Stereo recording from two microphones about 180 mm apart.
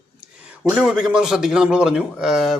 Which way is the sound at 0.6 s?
5° right (ahead or behind).